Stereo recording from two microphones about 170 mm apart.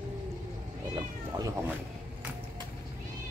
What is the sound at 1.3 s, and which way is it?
Speech, 25° right (ahead or behind).